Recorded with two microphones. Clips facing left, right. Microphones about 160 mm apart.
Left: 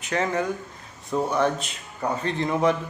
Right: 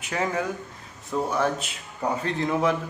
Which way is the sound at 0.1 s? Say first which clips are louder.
Left 2 dB; 5° right (ahead or behind).